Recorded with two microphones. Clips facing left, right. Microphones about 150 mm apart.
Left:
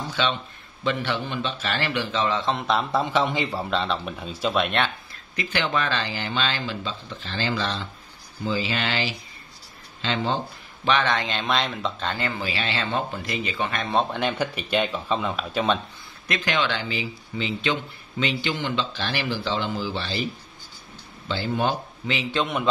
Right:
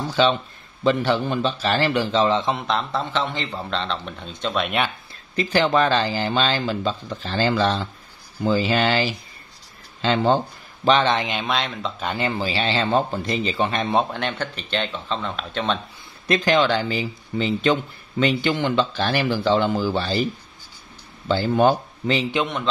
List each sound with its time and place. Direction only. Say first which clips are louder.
0.1 s speech: right 8 dB; 35° right (ahead or behind)
2.5 s speech: left 1 dB; 5° left (ahead or behind)
5.3 s speech: right 7 dB; 35° right (ahead or behind)
10.9 s speech: right 5 dB; 30° right (ahead or behind)
11.1 s speech: right 3 dB; 15° right (ahead or behind)
11.4 s speech: even; centre (ahead or behind)
12.0 s speech: right 6 dB; 15° right (ahead or behind)
12.3 s speech: right 5 dB; 30° right (ahead or behind)
14.1 s speech: left 2 dB; 5° left (ahead or behind)
16.3 s speech: right 7 dB; 35° right (ahead or behind)
21.3 s speech: right 7 dB; 45° right (ahead or behind)